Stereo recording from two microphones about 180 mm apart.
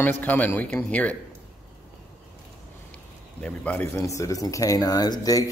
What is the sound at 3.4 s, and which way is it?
Speech, 5° left (ahead or behind).